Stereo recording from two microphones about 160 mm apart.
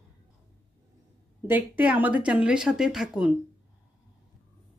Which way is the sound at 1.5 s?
10° right (ahead or behind).